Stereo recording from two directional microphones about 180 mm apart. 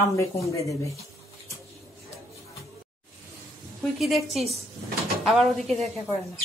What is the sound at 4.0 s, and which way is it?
A woman's voice, centre (ahead or behind).